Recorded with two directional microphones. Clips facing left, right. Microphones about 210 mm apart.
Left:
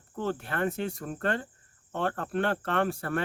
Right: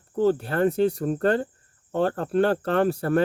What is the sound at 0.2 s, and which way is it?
Speech, 35° right (ahead or behind).